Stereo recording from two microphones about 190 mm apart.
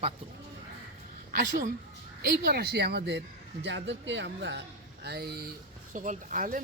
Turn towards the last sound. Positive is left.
turn(degrees=-45)  # may be behind; listen again after turning